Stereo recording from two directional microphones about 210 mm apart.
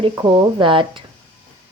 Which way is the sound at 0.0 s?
25° right (ahead or behind).